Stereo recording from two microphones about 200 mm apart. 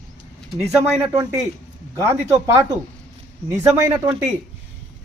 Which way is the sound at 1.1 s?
15° right (ahead or behind).